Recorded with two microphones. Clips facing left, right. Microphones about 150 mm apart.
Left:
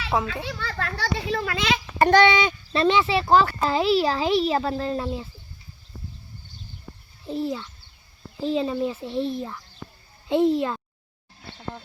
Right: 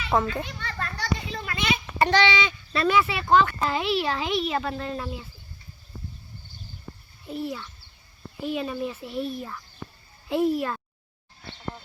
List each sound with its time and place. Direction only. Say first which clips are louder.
0.4 s a child's voice: left 4 dB; 90° left
2.0 s speech: left 5 dB; 50° left (ahead or behind)
2.7 s a child's voice: left 3 dB; 25° left (ahead or behind)
7.3 s a child's voice: left 4 dB; 30° left (ahead or behind)